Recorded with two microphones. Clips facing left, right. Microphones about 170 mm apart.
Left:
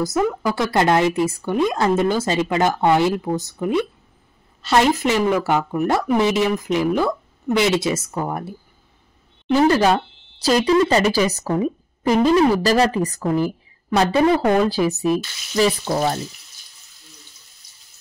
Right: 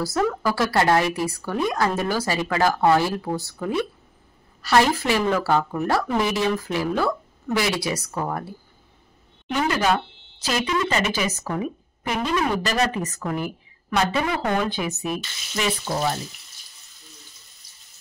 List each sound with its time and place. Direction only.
0.0 s a woman's voice: 15° left (ahead or behind)
9.5 s speech: 35° left (ahead or behind)